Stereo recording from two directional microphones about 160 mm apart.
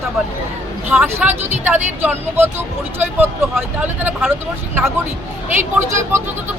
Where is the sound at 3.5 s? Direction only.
5° right (ahead or behind).